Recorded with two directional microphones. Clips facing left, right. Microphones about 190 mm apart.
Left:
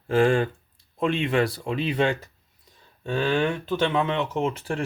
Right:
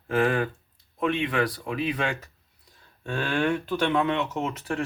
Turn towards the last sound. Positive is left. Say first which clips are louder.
# left 3 dB
turn(degrees=30)  # may be behind; listen again after turning